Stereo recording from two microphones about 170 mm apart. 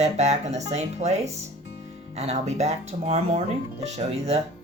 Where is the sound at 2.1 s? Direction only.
40° right (ahead or behind).